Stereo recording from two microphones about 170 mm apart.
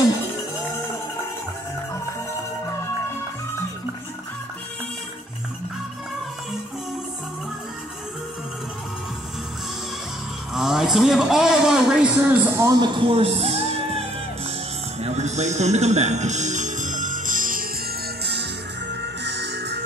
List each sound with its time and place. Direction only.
10.5 s a man's voice: centre (ahead or behind)
12.8 s speech: 35° right (ahead or behind)
15.0 s music: 40° right (ahead or behind)
18.2 s music: 80° right